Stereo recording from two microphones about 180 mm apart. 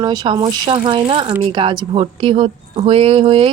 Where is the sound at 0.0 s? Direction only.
20° right (ahead or behind).